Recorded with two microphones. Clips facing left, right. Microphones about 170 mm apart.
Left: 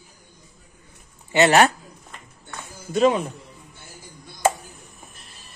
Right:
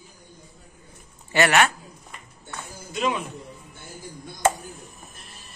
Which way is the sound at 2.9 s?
40° left (ahead or behind).